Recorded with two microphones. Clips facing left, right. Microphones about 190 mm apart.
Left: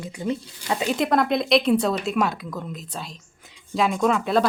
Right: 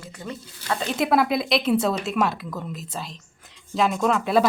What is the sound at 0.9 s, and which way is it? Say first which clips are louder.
Speech: even; 5° right (ahead or behind).